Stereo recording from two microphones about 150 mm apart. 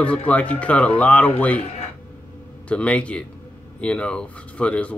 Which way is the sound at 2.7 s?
10° left (ahead or behind).